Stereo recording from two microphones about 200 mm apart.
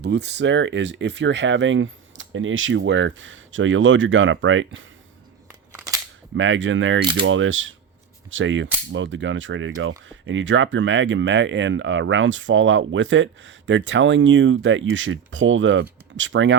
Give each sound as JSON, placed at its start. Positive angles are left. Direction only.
{"t": 0.0, "sound": "speech", "side_deg": -60}
{"t": 5.5, "sound": "scissors", "side_deg": -15}
{"t": 6.3, "sound": "speech", "side_deg": -70}